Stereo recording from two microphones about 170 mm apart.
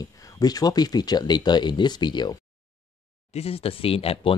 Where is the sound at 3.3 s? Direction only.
35° left (ahead or behind).